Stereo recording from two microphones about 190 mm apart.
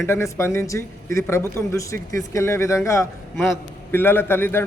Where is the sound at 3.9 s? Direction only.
10° left (ahead or behind).